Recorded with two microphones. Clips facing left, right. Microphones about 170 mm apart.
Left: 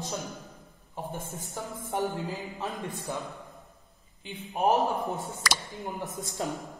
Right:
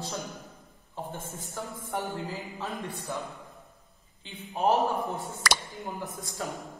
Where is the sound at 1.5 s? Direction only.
15° left (ahead or behind).